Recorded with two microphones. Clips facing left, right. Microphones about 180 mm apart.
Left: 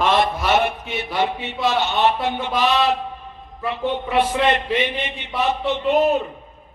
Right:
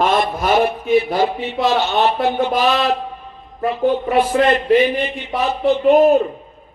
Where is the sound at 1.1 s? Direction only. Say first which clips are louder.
Right 4 dB; 50° right (ahead or behind).